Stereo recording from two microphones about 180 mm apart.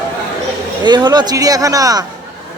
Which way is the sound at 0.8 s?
25° right (ahead or behind).